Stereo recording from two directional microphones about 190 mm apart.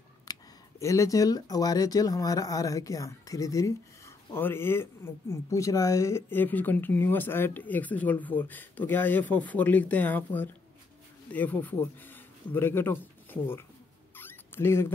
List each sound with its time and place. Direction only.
0.2 s speech: 20° left (ahead or behind)
14.1 s rodents: 10° left (ahead or behind)